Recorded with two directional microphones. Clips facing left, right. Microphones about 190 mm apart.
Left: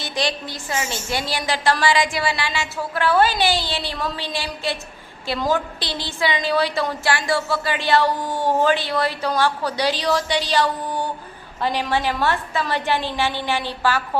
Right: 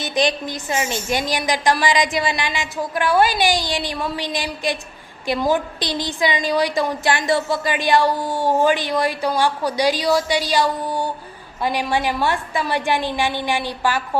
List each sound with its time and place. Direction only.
0.0 s a woman's voice: 20° right (ahead or behind)